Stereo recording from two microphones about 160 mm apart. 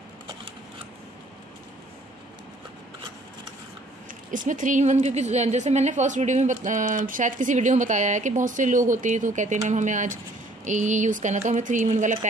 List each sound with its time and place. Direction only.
4.3 s a woman's voice: 55° right (ahead or behind)